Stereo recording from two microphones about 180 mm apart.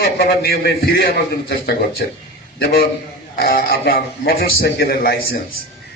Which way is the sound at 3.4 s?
55° left (ahead or behind).